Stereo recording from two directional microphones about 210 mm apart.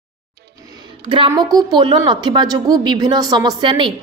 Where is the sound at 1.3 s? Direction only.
20° right (ahead or behind).